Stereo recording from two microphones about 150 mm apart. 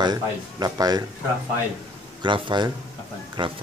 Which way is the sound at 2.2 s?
30° right (ahead or behind).